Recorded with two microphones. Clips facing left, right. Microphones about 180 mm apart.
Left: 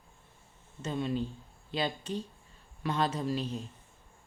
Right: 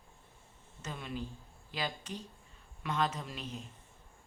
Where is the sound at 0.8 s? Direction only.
30° left (ahead or behind).